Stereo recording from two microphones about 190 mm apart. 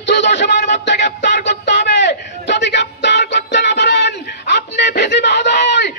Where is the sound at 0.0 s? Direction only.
65° left (ahead or behind).